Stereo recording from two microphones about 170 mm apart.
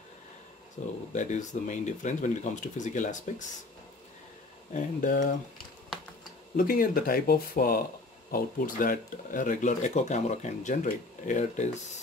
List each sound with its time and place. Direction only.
1.1 s speech: 45° left (ahead or behind)
4.7 s speech: 50° left (ahead or behind)
6.5 s speech: 55° left (ahead or behind)